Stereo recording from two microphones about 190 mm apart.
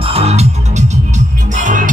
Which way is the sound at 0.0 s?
30° right (ahead or behind).